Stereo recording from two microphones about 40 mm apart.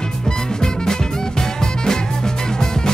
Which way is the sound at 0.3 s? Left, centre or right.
Centre.